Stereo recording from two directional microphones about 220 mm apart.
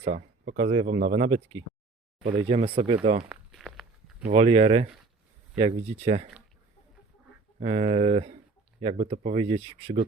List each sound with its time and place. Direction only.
0.0 s a sound: 40° right (ahead or behind)
0.5 s speech: 30° right (ahead or behind)
3.2 s walk: centre (ahead or behind)
4.3 s speech: 25° right (ahead or behind)
7.6 s speech: 30° right (ahead or behind)